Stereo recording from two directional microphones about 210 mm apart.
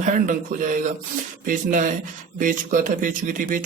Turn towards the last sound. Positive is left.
turn(degrees=-40)  # may be behind; listen again after turning